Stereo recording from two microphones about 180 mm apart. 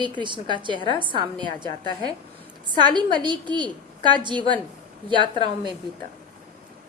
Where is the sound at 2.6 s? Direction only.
25° right (ahead or behind).